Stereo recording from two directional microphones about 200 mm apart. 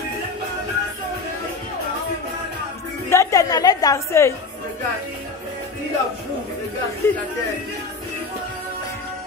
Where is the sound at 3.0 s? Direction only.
15° left (ahead or behind).